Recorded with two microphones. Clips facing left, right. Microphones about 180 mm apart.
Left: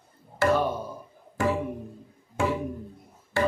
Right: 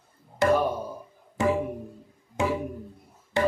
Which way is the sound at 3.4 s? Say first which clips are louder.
Right 1 dB; 20° right (ahead or behind).